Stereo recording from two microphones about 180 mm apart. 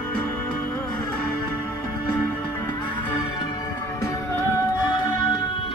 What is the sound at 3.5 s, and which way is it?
Music, 20° left (ahead or behind).